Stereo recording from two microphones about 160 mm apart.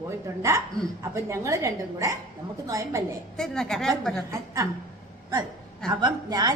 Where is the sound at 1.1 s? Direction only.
20° right (ahead or behind).